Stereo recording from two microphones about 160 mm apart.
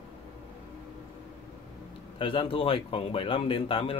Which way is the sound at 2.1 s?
35° left (ahead or behind).